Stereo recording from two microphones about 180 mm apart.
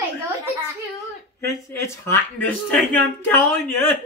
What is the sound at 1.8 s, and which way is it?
Speech, 15° left (ahead or behind).